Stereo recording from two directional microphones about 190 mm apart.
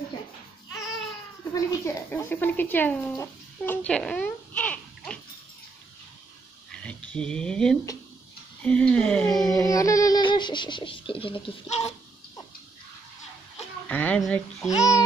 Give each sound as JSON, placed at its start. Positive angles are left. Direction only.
{"t": 1.5, "sound": "speech", "side_deg": 15}
{"t": 6.7, "sound": "a sound", "side_deg": 5}
{"t": 8.6, "sound": "speech", "side_deg": 5}
{"t": 9.5, "sound": "speech", "side_deg": 20}
{"t": 13.8, "sound": "speech", "side_deg": 5}
{"t": 14.8, "sound": "speech", "side_deg": 15}